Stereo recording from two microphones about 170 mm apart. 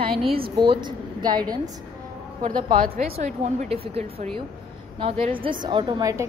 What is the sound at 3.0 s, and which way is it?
A woman's voice, 40° right (ahead or behind).